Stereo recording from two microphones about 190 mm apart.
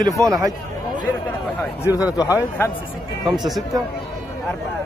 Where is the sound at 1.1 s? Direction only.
10° left (ahead or behind).